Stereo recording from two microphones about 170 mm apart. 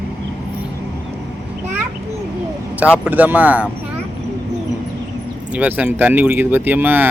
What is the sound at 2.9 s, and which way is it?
Speech, 10° right (ahead or behind).